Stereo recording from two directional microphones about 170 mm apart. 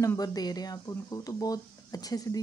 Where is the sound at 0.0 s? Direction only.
20° left (ahead or behind).